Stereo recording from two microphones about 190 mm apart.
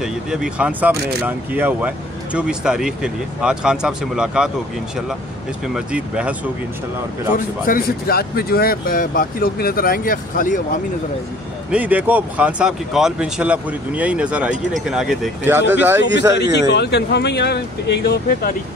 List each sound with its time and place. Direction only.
0.0 s speech: 5° right (ahead or behind)
5.8 s speech: 5° right (ahead or behind)
7.3 s speech: 45° left (ahead or behind)
11.7 s speech: 10° right (ahead or behind)
16.5 s speech: 65° left (ahead or behind)